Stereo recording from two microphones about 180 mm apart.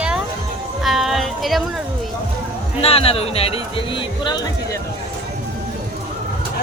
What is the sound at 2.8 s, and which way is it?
Speech, 30° left (ahead or behind).